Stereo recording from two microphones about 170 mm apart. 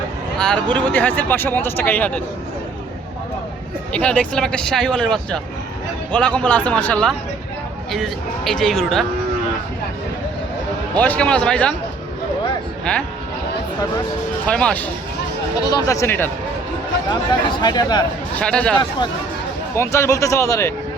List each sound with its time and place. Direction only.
0.3 s speech: 5° left (ahead or behind)
3.9 s speech: 5° left (ahead or behind)
10.9 s speech: 10° left (ahead or behind)
12.8 s speech: 5° left (ahead or behind)
14.4 s speech: 5° left (ahead or behind)
15.6 s speech: 20° left (ahead or behind)
17.6 s speech: 25° left (ahead or behind)
18.3 s speech: 5° left (ahead or behind)
19.7 s speech: 15° left (ahead or behind)